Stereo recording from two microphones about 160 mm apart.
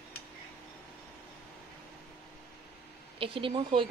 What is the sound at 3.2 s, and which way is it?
Speech, 35° right (ahead or behind).